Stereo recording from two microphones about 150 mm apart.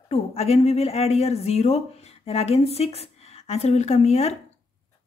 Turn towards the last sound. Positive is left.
turn(degrees=45)  # may be behind; listen again after turning